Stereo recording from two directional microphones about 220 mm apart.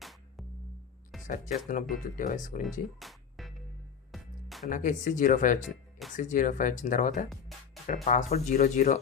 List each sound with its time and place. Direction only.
0.0 s music: centre (ahead or behind)
1.3 s speech: 35° left (ahead or behind)
3.0 s music: centre (ahead or behind)
4.7 s speech: 35° left (ahead or behind)
7.5 s music: centre (ahead or behind)
8.0 s speech: 30° left (ahead or behind)